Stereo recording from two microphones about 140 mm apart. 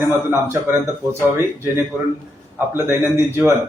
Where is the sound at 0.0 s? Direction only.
20° right (ahead or behind).